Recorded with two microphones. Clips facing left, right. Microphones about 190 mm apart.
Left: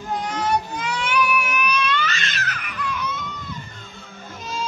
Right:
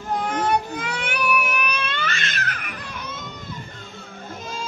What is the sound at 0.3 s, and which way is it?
Baby cry, 55° right (ahead or behind).